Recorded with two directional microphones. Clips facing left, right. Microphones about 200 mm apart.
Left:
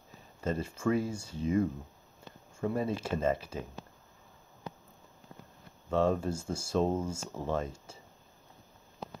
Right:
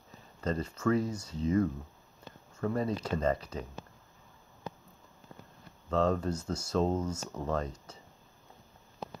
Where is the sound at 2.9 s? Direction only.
25° left (ahead or behind).